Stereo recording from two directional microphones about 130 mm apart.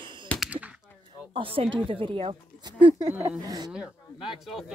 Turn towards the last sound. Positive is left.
turn(degrees=-5)  # may be behind; listen again after turning